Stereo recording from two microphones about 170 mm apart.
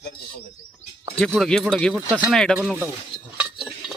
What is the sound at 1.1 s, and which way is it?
Speech, 5° left (ahead or behind).